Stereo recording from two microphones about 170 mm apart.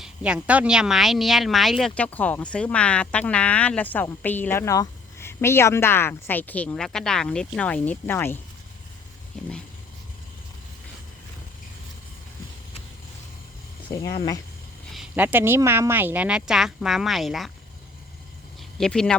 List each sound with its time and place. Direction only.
0.0 s speech: 5° right (ahead or behind); by 8.4 s 15° left (ahead or behind)
13.9 s speech: 20° left (ahead or behind)
14.9 s speech: 10° right (ahead or behind)
18.8 s speech: 5° left (ahead or behind)